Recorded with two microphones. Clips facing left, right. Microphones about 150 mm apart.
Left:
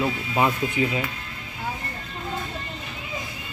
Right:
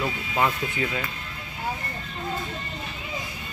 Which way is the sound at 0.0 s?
20° left (ahead or behind).